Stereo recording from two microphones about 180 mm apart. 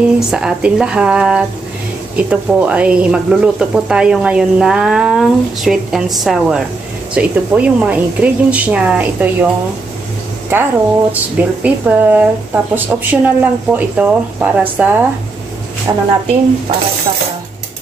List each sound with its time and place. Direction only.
0.3 s speech: 5° right (ahead or behind)
10.5 s speech: 10° right (ahead or behind)
15.9 s a woman's voice: 20° right (ahead or behind)